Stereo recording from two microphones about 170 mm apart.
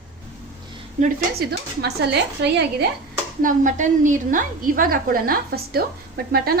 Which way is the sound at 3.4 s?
50° right (ahead or behind).